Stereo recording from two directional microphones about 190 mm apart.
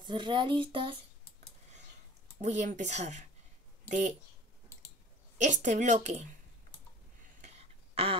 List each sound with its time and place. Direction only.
0.0 s speech: 25° right (ahead or behind)
2.4 s a woman's voice: 40° right (ahead or behind)
5.4 s a woman's voice: 40° right (ahead or behind)
7.4 s a sound: 35° right (ahead or behind)